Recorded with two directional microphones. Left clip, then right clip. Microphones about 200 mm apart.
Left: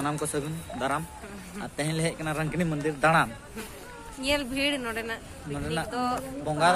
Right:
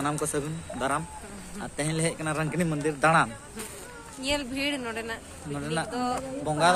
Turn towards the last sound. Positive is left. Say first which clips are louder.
# even
turn(degrees=-15)  # may be behind; listen again after turning